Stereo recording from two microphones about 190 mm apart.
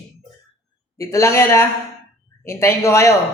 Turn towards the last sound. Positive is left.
turn(degrees=15)  # may be behind; listen again after turning